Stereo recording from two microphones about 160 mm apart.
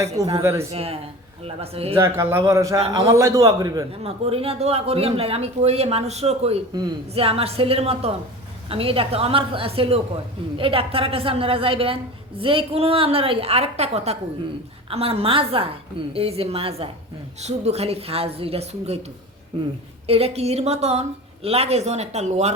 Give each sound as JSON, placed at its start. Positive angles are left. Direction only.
{"t": 0.4, "sound": "speech", "side_deg": -15}
{"t": 0.7, "sound": "speech", "side_deg": -40}
{"t": 2.0, "sound": "a man's voice", "side_deg": -15}
{"t": 4.0, "sound": "speech", "side_deg": -35}
{"t": 20.1, "sound": "speech", "side_deg": -40}